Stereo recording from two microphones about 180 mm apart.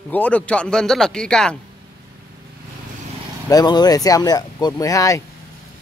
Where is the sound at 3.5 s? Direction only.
25° left (ahead or behind).